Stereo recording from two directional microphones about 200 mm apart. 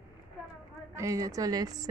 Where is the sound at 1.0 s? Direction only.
15° right (ahead or behind).